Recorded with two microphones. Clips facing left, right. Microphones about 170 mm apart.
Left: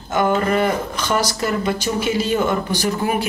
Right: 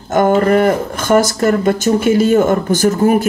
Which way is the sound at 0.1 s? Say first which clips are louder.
Right 7 dB; 45° right (ahead or behind).